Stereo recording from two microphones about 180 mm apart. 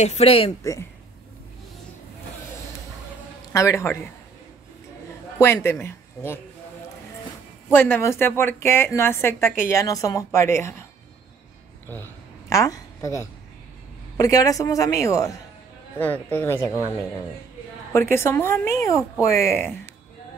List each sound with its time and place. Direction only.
0.0 s a woman's voice: 35° left (ahead or behind)
3.5 s a woman's voice: 15° left (ahead or behind)
5.4 s speech: 15° left (ahead or behind)
7.7 s a woman's voice: 10° left (ahead or behind)
12.4 s a woman's voice: 20° left (ahead or behind)
17.9 s a woman's voice: 15° left (ahead or behind)